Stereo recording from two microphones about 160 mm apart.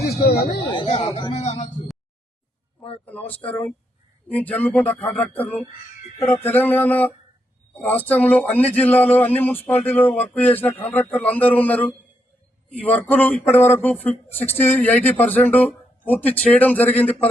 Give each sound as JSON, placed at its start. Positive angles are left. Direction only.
{"t": 0.1, "sound": "speech", "side_deg": 80}
{"t": 0.7, "sound": "speech", "side_deg": 35}
{"t": 3.1, "sound": "speech", "side_deg": 10}